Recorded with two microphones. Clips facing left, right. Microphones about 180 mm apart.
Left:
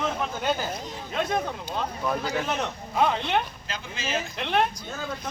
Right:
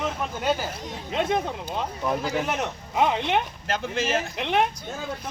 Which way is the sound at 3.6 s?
55° right (ahead or behind).